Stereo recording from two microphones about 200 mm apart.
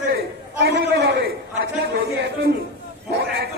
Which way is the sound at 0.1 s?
55° right (ahead or behind).